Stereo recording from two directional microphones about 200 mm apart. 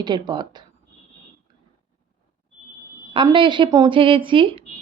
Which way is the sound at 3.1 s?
25° right (ahead or behind).